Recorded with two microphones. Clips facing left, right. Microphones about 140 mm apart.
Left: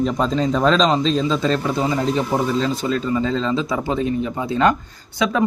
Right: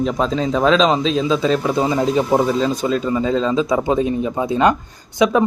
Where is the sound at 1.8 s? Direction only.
20° right (ahead or behind).